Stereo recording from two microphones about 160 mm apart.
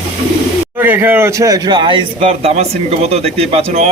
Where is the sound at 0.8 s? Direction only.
10° right (ahead or behind).